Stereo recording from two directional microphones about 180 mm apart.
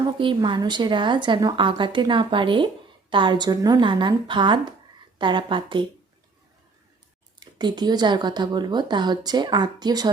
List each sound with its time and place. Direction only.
0.2 s a woman's voice: 25° right (ahead or behind)
7.3 s a woman's voice: 25° right (ahead or behind)